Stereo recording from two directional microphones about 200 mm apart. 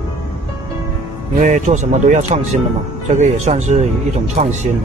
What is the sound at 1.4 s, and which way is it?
Speech, 35° right (ahead or behind).